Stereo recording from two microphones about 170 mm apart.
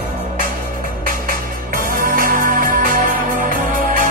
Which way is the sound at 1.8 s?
55° right (ahead or behind).